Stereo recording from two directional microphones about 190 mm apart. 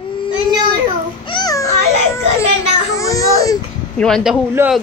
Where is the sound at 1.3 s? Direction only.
20° left (ahead or behind).